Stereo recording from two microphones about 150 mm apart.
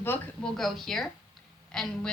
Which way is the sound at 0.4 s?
Centre (ahead or behind).